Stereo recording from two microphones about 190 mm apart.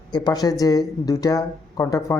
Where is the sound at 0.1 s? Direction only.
20° left (ahead or behind).